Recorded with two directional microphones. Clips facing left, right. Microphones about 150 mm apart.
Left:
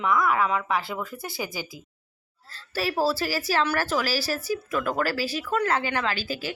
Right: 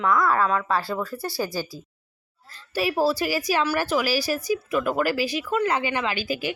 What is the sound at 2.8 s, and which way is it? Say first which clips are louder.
A woman's voice: right 2 dB; 15° right (ahead or behind).